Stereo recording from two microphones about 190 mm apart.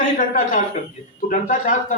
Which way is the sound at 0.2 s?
40° left (ahead or behind).